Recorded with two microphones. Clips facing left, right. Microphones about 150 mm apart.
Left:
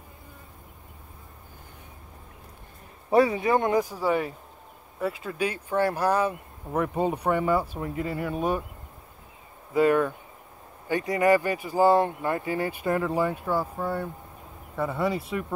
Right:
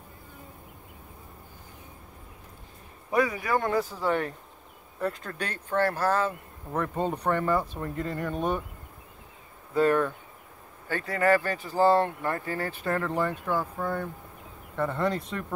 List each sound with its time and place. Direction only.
3.1 s speech: 30° left (ahead or behind); by 8.6 s 5° left (ahead or behind)
9.8 s speech: 10° left (ahead or behind)